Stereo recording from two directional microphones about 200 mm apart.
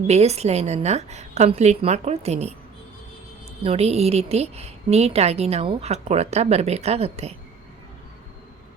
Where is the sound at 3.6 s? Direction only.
30° right (ahead or behind).